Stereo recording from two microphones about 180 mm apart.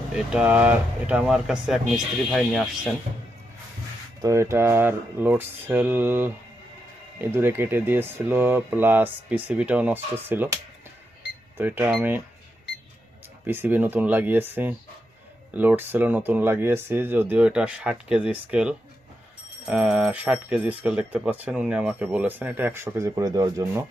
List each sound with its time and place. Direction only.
0.3 s speech: 5° right (ahead or behind)
4.2 s speech: 15° right (ahead or behind)
13.4 s speech: 10° right (ahead or behind)